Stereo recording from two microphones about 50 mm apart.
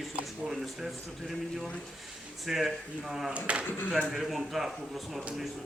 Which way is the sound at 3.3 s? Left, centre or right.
Right.